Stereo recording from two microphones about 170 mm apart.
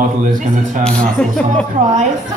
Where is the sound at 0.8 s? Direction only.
5° left (ahead or behind).